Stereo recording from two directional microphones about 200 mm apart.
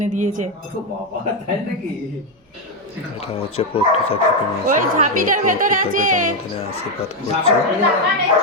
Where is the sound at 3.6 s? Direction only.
30° left (ahead or behind).